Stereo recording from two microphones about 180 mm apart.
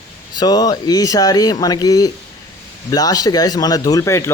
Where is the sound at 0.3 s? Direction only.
25° left (ahead or behind).